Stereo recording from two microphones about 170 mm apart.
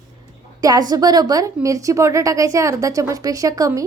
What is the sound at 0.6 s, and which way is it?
A woman's voice, 20° right (ahead or behind).